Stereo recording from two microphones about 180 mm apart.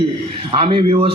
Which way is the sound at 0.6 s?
30° right (ahead or behind).